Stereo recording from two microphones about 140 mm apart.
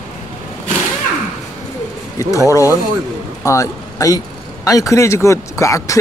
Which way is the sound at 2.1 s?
20° left (ahead or behind).